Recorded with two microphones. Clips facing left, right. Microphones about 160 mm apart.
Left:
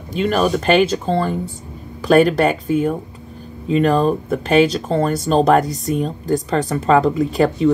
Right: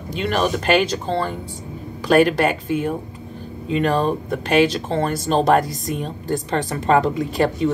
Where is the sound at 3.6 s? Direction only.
40° left (ahead or behind).